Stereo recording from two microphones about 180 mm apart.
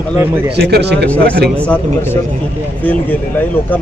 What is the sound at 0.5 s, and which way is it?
Speech, 65° right (ahead or behind).